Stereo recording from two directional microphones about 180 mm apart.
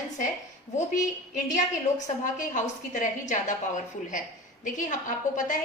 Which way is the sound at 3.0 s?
45° left (ahead or behind).